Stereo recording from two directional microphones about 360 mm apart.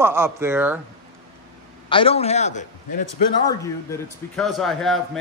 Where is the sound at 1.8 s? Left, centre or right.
Centre.